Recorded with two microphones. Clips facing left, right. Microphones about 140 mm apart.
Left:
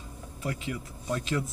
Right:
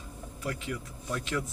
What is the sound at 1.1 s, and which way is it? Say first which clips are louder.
Speech: left 3 dB; 25° left (ahead or behind).